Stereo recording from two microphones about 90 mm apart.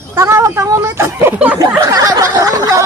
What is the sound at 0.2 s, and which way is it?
Speech, 35° right (ahead or behind).